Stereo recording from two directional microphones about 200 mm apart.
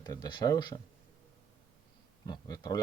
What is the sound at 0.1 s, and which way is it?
Speech, 20° left (ahead or behind).